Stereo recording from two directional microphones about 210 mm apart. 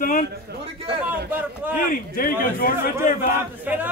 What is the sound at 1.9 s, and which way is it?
A man's voice, 40° left (ahead or behind).